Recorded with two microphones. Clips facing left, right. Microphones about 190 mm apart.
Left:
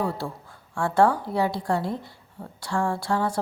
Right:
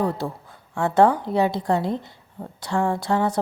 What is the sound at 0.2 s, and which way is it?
A woman's voice, 20° right (ahead or behind).